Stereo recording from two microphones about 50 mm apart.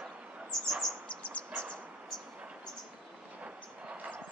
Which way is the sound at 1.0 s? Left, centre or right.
Left.